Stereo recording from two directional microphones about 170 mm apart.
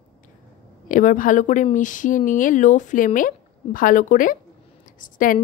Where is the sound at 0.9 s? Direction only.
50° left (ahead or behind).